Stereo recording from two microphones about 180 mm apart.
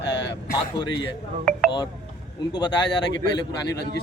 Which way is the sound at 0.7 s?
25° left (ahead or behind).